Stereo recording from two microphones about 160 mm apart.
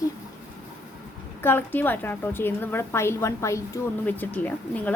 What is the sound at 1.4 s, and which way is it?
A woman's voice, 15° left (ahead or behind).